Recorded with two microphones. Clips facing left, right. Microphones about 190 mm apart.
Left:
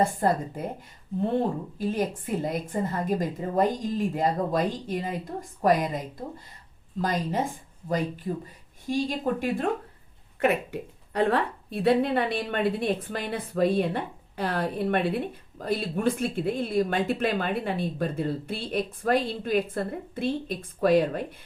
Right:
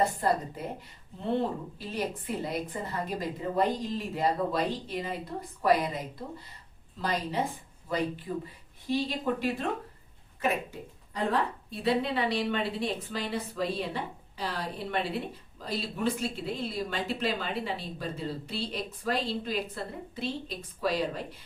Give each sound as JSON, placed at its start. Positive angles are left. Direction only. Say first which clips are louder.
{"t": 0.0, "sound": "a woman's voice", "louder": "left 3 dB", "side_deg": 50}
{"t": 1.8, "sound": "a woman's voice", "louder": "left 7 dB", "side_deg": 45}
{"t": 7.0, "sound": "a woman's voice", "louder": "left 3 dB", "side_deg": 45}
{"t": 10.4, "sound": "a woman's voice", "louder": "left 6 dB", "side_deg": 65}